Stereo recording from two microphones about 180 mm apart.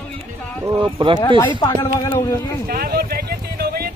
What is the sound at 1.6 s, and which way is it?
Speech, 20° left (ahead or behind).